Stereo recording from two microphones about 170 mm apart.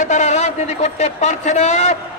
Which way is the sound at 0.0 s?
45° left (ahead or behind).